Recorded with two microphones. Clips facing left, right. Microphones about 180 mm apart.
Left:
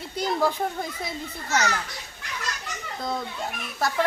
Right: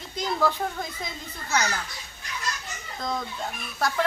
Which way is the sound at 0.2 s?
10° left (ahead or behind).